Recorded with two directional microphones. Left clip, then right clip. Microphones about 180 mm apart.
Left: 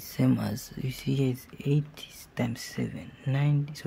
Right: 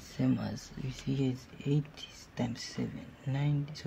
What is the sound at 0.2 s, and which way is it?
Speech, 40° left (ahead or behind).